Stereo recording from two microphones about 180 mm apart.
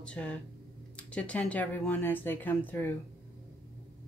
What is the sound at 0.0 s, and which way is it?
Speech, 5° left (ahead or behind).